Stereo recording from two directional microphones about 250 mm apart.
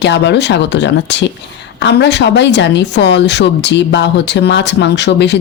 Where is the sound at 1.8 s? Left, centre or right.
Left.